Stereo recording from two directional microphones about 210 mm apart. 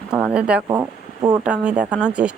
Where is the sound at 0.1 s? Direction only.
5° right (ahead or behind).